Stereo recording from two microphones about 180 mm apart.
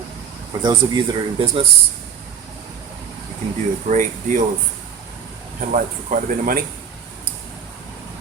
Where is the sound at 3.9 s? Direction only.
45° right (ahead or behind).